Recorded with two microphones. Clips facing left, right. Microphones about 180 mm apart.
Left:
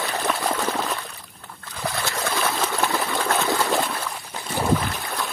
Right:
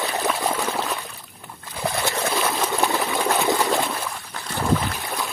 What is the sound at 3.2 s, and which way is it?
Trickle, 15° right (ahead or behind).